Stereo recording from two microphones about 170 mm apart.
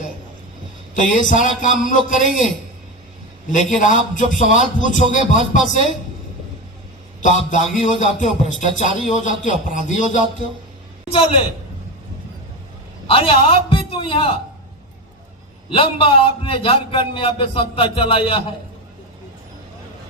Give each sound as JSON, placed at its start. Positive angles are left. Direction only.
{"t": 0.9, "sound": "a man's voice", "side_deg": 50}
{"t": 3.5, "sound": "a man's voice", "side_deg": 50}
{"t": 7.2, "sound": "a man's voice", "side_deg": 50}
{"t": 13.1, "sound": "a man's voice", "side_deg": 30}
{"t": 15.7, "sound": "a man's voice", "side_deg": 35}